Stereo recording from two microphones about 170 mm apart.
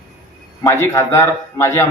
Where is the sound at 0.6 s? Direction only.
15° left (ahead or behind).